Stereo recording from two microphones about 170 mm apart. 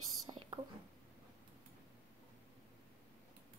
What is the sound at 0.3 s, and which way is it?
Whispering, 30° right (ahead or behind).